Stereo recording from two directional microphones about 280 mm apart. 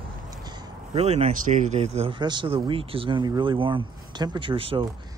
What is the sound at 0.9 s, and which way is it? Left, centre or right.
Speech, right.